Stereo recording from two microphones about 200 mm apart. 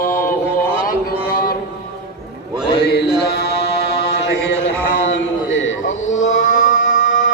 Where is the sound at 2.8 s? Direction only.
55° left (ahead or behind).